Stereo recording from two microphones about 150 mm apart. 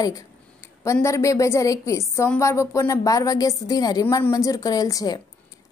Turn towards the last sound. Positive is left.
turn(degrees=25)  # may be behind; listen again after turning